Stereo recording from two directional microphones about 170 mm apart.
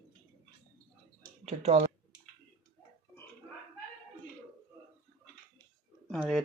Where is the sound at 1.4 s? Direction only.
40° right (ahead or behind).